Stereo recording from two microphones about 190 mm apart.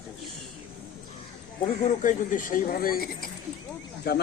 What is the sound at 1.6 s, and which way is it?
Speech, 35° left (ahead or behind).